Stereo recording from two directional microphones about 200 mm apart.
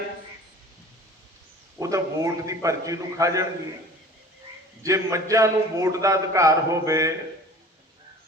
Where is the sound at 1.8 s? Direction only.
15° right (ahead or behind).